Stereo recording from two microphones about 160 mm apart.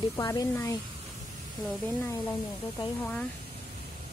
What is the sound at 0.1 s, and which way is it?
Speech, 20° left (ahead or behind).